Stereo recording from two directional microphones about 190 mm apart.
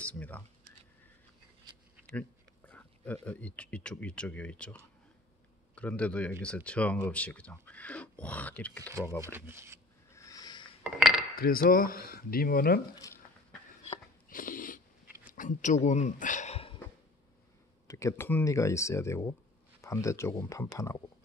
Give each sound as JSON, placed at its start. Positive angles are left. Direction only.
{"t": 0.0, "sound": "speech", "side_deg": 5}
{"t": 2.0, "sound": "speech", "side_deg": 5}
{"t": 9.2, "sound": "speech", "side_deg": -10}
{"t": 10.1, "sound": "a sound", "side_deg": 20}
{"t": 10.8, "sound": "cutlery", "side_deg": 0}
{"t": 11.3, "sound": "speech", "side_deg": 50}
{"t": 13.0, "sound": "a sound", "side_deg": 15}
{"t": 13.8, "sound": "a sound", "side_deg": 45}
{"t": 15.2, "sound": "speech", "side_deg": 45}
{"t": 17.8, "sound": "speech", "side_deg": 15}